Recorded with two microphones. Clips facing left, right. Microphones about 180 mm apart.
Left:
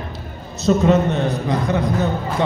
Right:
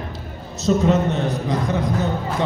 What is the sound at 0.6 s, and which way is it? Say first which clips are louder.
A man's voice: left 2 dB; 60° left (ahead or behind).